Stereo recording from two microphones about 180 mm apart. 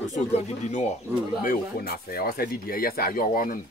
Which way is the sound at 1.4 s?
55° left (ahead or behind).